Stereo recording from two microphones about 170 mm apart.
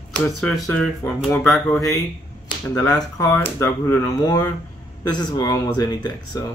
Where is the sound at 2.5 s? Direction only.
20° left (ahead or behind).